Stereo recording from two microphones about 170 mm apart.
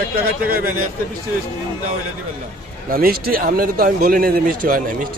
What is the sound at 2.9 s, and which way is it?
Speech, 60° right (ahead or behind).